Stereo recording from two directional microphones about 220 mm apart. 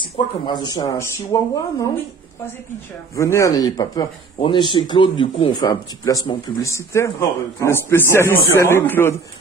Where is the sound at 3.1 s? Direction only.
15° left (ahead or behind).